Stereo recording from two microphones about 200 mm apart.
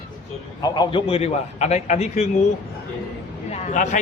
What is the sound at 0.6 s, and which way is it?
A man's voice, 25° left (ahead or behind).